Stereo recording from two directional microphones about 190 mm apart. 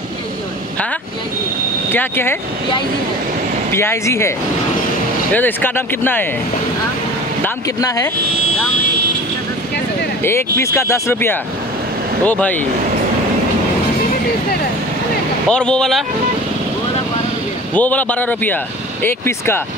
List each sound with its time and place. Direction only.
1.9 s speech: 10° left (ahead or behind)
3.7 s speech: 15° left (ahead or behind)
5.3 s speech: 10° left (ahead or behind)
7.4 s speech: 20° left (ahead or behind)
10.6 s speech: 15° left (ahead or behind)
15.5 s speech: 5° left (ahead or behind)
17.7 s speech: 10° left (ahead or behind)